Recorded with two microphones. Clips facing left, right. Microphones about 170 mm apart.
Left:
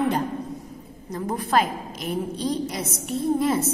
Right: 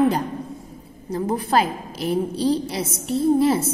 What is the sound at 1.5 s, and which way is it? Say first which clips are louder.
A woman's voice: left 1 dB; 35° right (ahead or behind).